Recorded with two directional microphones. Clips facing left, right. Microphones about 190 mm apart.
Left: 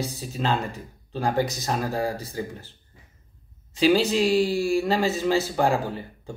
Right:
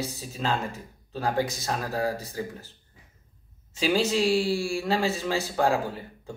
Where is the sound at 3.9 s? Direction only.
35° left (ahead or behind).